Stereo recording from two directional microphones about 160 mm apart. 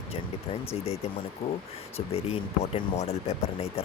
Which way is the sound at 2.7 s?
40° left (ahead or behind).